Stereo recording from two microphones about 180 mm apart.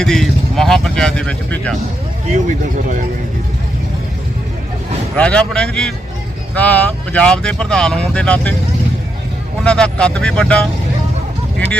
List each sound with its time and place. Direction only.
0.0 s speech: centre (ahead or behind)
2.3 s speech: 45° right (ahead or behind)
5.1 s speech: 5° left (ahead or behind)
9.6 s speech: 5° left (ahead or behind)